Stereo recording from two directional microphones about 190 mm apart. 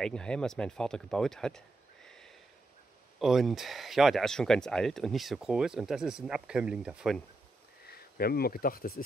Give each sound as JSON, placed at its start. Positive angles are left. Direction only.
{"t": 0.0, "sound": "speech", "side_deg": 5}
{"t": 2.0, "sound": "sniff", "side_deg": 5}
{"t": 3.2, "sound": "speech", "side_deg": 0}
{"t": 7.8, "sound": "speech", "side_deg": 55}